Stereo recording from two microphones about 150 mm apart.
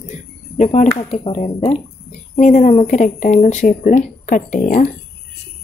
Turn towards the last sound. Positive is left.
turn(degrees=60)  # may be behind; listen again after turning